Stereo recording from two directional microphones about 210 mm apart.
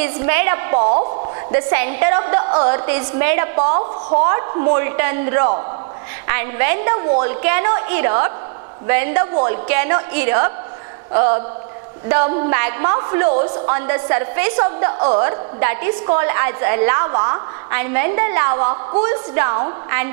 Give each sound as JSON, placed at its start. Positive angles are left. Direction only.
{"t": 0.0, "sound": "a woman's voice", "side_deg": -15}
{"t": 3.5, "sound": "a woman's voice", "side_deg": -30}
{"t": 9.3, "sound": "a woman's voice", "side_deg": -25}
{"t": 9.7, "sound": "a woman's voice", "side_deg": -15}
{"t": 12.1, "sound": "a woman's voice", "side_deg": -15}